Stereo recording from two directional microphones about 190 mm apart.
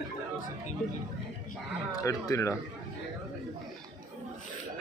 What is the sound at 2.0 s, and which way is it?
Speech, 15° left (ahead or behind).